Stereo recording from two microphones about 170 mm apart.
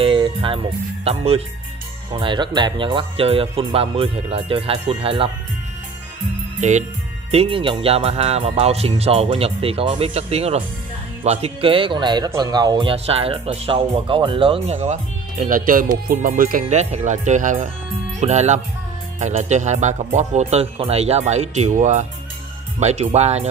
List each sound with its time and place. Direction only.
0.0 s music: 30° right (ahead or behind)
1.0 s speech: 35° right (ahead or behind)
6.6 s speech: 45° right (ahead or behind)
16.6 s speech: 40° right (ahead or behind)